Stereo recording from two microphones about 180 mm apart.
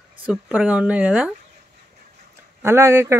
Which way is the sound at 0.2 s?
5° right (ahead or behind).